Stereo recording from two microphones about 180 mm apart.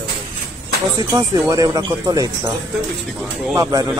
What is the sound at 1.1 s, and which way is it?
Speech, 20° right (ahead or behind).